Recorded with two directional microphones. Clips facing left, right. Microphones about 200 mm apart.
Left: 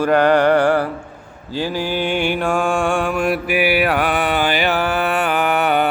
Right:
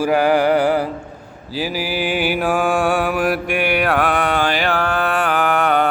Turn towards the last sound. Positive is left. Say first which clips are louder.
# even
turn(degrees=5)  # may be behind; listen again after turning